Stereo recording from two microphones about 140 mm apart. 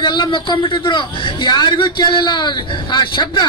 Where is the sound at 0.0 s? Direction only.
35° left (ahead or behind).